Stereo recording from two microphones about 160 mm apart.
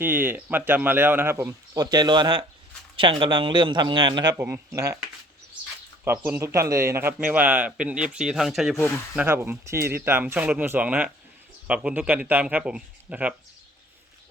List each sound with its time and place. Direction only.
0.0 s a man's voice: 15° right (ahead or behind)
4.4 s a man's voice: 15° right (ahead or behind)
6.1 s a man's voice: 15° right (ahead or behind)
9.1 s a man's voice: 15° right (ahead or behind)